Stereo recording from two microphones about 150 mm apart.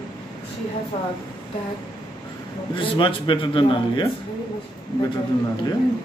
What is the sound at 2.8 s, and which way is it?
A man's voice, 35° left (ahead or behind).